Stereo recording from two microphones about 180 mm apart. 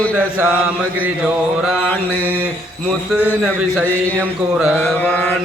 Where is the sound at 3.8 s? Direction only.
10° left (ahead or behind).